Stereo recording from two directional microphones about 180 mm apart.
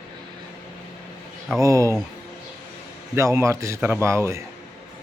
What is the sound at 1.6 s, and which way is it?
Speech, 15° right (ahead or behind).